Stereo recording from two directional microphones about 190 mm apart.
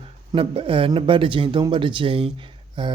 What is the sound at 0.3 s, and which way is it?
Speech, 30° right (ahead or behind).